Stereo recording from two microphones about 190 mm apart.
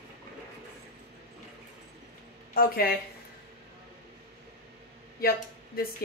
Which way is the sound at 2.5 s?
55° left (ahead or behind).